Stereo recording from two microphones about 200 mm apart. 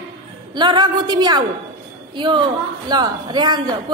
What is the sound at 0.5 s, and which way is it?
A woman's voice, 25° right (ahead or behind).